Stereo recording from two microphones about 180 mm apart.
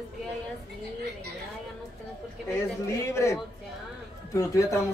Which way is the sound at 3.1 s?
15° left (ahead or behind).